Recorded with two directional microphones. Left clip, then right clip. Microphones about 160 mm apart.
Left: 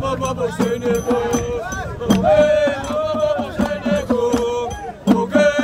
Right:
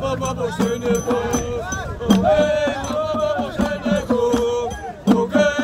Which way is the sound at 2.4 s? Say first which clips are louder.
Left 4 dB; 25° left (ahead or behind).